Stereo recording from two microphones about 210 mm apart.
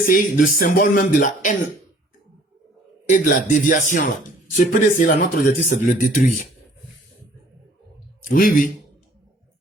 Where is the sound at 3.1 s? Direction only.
40° left (ahead or behind).